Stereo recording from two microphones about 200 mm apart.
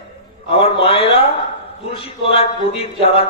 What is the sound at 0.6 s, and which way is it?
Speech, 30° left (ahead or behind).